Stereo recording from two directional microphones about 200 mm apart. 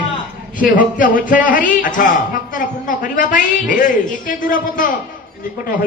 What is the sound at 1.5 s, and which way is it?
A man's voice, 40° left (ahead or behind).